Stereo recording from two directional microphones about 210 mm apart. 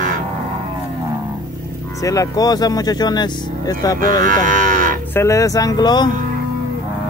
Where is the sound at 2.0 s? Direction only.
15° left (ahead or behind).